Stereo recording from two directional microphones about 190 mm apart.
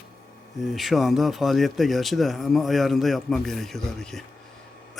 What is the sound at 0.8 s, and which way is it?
Speech, centre (ahead or behind).